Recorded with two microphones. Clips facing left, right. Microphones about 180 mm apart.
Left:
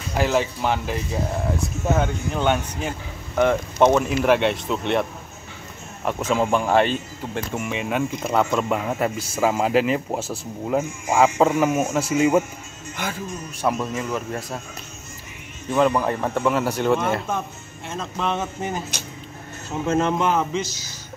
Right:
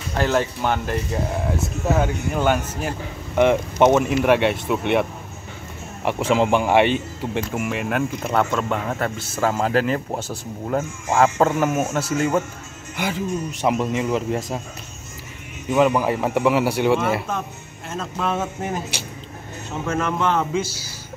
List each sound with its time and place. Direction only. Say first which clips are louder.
0.1 s speech: even; 5° left (ahead or behind)
6.0 s speech: right 3 dB; 15° right (ahead or behind)
7.5 s speech: left 1 dB; centre (ahead or behind)
8.5 s speech: left 1 dB; 10° left (ahead or behind)
11.6 s speech: left 1 dB; 5° right (ahead or behind)
11.9 s speech: left 2 dB; 10° left (ahead or behind)
12.9 s speech: right 5 dB; 15° right (ahead or behind)
15.7 s speech: right 2 dB; 5° right (ahead or behind)
19.9 s speech: left 3 dB; 25° left (ahead or behind)
20.2 s speech: even; 10° left (ahead or behind)
20.5 s speech: right 2 dB; 10° right (ahead or behind)